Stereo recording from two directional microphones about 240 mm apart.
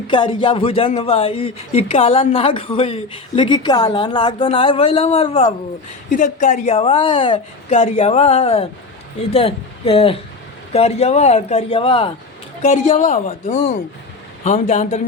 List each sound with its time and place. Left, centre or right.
0.1 s speech: left